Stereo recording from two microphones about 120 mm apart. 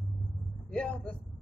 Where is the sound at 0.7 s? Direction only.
10° left (ahead or behind).